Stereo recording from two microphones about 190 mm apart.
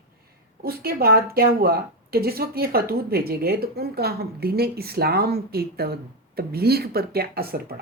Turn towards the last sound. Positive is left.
turn(degrees=-55)  # may be behind; listen again after turning